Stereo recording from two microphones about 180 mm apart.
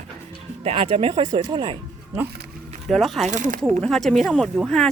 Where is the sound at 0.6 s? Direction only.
30° right (ahead or behind).